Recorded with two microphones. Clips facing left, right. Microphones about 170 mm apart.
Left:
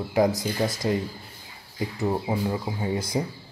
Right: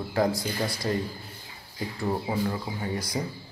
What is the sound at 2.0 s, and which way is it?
Speech, 20° left (ahead or behind).